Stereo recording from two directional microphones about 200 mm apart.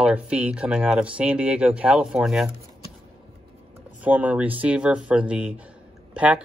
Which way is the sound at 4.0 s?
10° right (ahead or behind).